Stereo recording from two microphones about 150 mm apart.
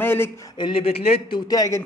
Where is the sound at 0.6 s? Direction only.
35° left (ahead or behind).